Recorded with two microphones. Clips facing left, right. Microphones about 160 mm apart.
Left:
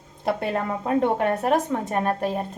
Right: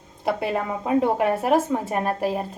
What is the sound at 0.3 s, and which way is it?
A woman's voice, 5° right (ahead or behind).